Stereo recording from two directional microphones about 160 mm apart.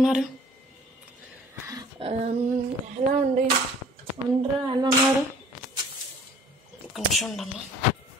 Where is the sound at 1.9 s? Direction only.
40° right (ahead or behind).